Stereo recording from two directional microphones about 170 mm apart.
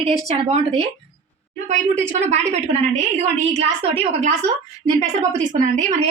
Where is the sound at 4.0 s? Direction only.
40° right (ahead or behind).